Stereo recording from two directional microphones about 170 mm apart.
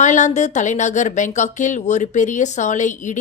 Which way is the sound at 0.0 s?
45° left (ahead or behind).